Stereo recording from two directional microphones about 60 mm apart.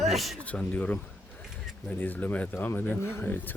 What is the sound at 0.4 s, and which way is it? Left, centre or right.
Speech, left.